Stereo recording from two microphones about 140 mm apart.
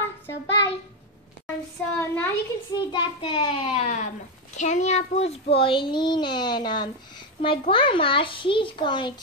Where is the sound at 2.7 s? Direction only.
35° left (ahead or behind).